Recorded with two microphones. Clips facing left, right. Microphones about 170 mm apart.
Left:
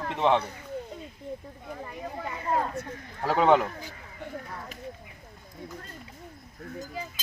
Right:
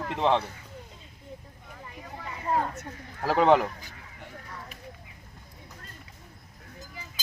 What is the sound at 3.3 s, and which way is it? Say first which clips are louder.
Speech: right 1 dB; centre (ahead or behind).